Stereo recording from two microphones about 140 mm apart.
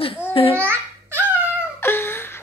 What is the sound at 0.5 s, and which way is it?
Speech, 15° right (ahead or behind).